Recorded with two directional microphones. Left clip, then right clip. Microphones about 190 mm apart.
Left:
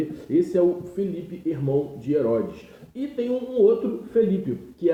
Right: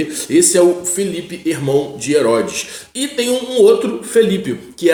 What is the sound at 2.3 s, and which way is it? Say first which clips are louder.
A man's voice: right 9 dB; 10° right (ahead or behind).